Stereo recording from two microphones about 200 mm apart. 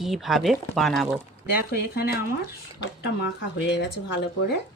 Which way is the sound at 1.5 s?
50° left (ahead or behind).